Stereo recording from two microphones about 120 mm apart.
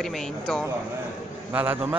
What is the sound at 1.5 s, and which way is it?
Speech, 15° right (ahead or behind).